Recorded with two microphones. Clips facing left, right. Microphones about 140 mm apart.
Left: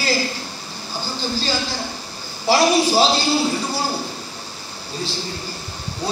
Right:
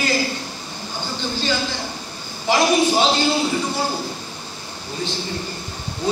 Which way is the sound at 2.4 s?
35° left (ahead or behind).